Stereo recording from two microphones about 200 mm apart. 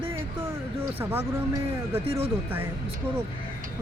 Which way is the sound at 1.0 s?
10° right (ahead or behind).